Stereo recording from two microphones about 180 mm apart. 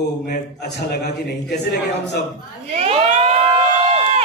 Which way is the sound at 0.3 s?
65° left (ahead or behind).